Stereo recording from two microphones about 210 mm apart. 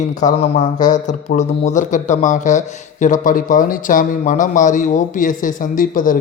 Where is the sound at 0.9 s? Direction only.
35° left (ahead or behind).